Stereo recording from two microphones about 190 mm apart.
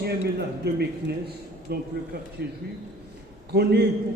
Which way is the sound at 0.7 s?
55° right (ahead or behind).